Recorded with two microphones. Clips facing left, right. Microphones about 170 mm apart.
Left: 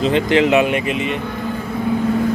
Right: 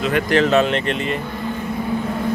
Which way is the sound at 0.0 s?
20° left (ahead or behind).